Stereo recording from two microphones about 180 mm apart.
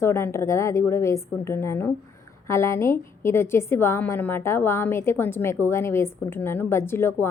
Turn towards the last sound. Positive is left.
turn(degrees=15)  # may be behind; listen again after turning